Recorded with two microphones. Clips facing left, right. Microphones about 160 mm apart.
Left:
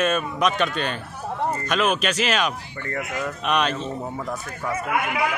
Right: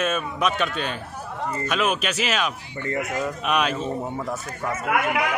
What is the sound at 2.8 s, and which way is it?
Speech, 20° right (ahead or behind).